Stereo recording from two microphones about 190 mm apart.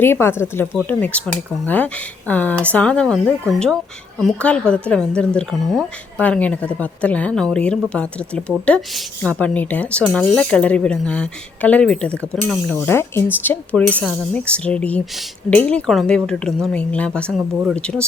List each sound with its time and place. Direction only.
0.0 s speech: 10° left (ahead or behind)